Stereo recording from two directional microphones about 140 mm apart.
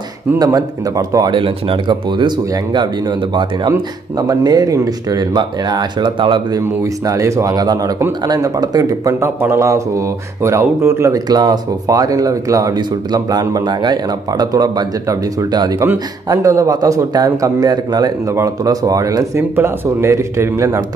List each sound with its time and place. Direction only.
0.4 s speech: 25° right (ahead or behind)
6.6 s speech: 20° right (ahead or behind)